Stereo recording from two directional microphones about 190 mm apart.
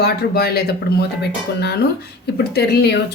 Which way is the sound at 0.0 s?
55° left (ahead or behind).